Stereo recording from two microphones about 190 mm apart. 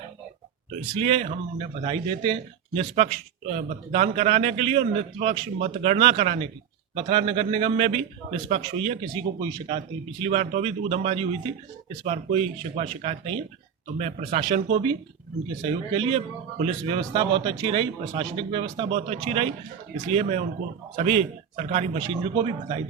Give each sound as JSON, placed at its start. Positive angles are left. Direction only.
{"t": 0.9, "sound": "a man's voice", "side_deg": -30}
{"t": 9.4, "sound": "speech", "side_deg": -20}
{"t": 10.2, "sound": "a man's voice", "side_deg": -35}
{"t": 16.0, "sound": "a man's voice", "side_deg": -35}